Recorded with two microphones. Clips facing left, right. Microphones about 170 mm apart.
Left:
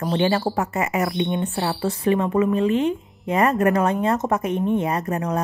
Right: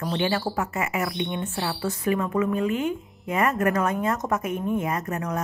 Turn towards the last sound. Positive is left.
turn(degrees=30)  # may be behind; listen again after turning